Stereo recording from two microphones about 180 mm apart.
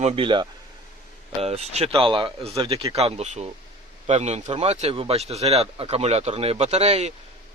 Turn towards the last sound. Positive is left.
turn(degrees=-35)  # may be behind; listen again after turning